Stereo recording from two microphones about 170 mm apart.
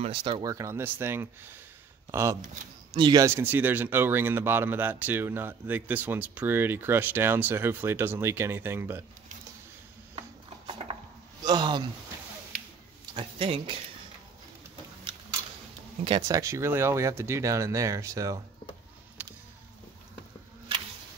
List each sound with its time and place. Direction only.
0.0 s speech: 30° right (ahead or behind); by 9.0 s 15° right (ahead or behind)
10.7 s a sound: 30° right (ahead or behind)
11.4 s speech: 25° right (ahead or behind)
13.1 s speech: 35° right (ahead or behind)
16.0 s speech: 35° right (ahead or behind)
16.3 s speech: 20° right (ahead or behind)
19.2 s a sound: 10° right (ahead or behind)